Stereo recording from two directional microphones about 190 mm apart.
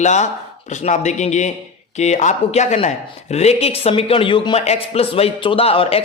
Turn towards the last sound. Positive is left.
turn(degrees=30)  # may be behind; listen again after turning